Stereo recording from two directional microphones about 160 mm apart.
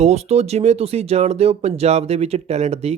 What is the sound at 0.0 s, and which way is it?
Speech, 45° right (ahead or behind).